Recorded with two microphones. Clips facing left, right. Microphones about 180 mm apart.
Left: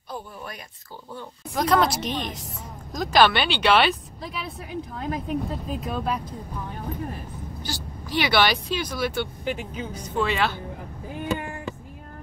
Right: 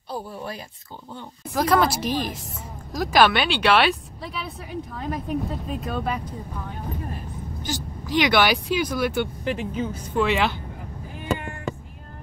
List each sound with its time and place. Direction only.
0.1 s speech: 30° right (ahead or behind)
1.5 s a woman's voice: centre (ahead or behind)
7.6 s speech: 15° right (ahead or behind)
9.4 s a woman's voice: 5° left (ahead or behind)
9.9 s speech: 10° right (ahead or behind)